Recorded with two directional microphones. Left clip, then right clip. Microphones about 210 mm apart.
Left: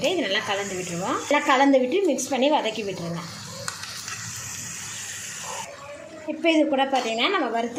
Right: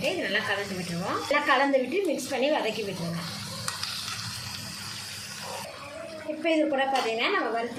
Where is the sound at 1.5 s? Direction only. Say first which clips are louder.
Left 6 dB; 35° left (ahead or behind).